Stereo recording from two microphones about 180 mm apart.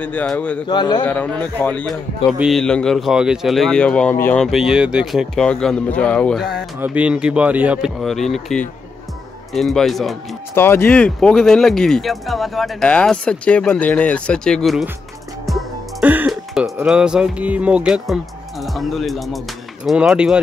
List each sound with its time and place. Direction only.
0.0 s a man's voice: 10° left (ahead or behind)
0.7 s a man's voice: 25° left (ahead or behind)
1.0 s a man's voice: 10° left (ahead or behind)
10.5 s speech: 15° left (ahead or behind)
15.4 s music: centre (ahead or behind)
16.1 s speech: 5° right (ahead or behind)